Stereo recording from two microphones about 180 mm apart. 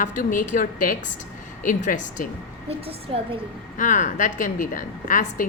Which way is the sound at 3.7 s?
45° left (ahead or behind).